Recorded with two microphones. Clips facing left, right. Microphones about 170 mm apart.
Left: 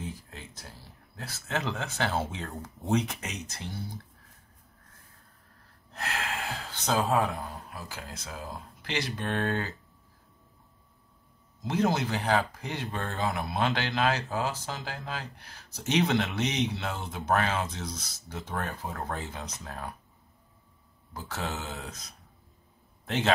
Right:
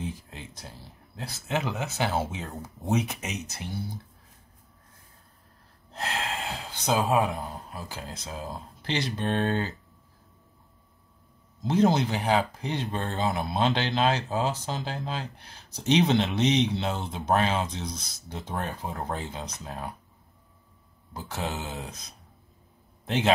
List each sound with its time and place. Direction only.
0.0 s a sound: 20° right (ahead or behind)
2.4 s speech: centre (ahead or behind)
5.9 s speech: 25° right (ahead or behind)
11.6 s speech: 30° right (ahead or behind)
11.9 s speech: 20° right (ahead or behind)
21.1 s speech: 20° right (ahead or behind)
23.0 s a man's voice: 20° right (ahead or behind)